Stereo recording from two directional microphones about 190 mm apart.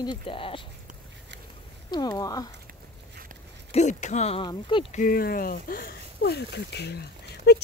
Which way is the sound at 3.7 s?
40° left (ahead or behind).